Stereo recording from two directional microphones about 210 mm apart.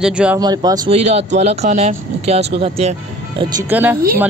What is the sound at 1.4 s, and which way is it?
Speech, 30° right (ahead or behind).